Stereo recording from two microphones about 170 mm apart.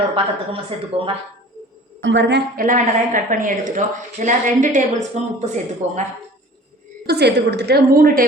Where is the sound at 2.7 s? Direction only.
50° right (ahead or behind).